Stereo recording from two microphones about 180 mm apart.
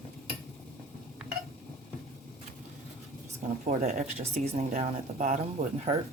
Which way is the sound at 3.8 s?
40° right (ahead or behind).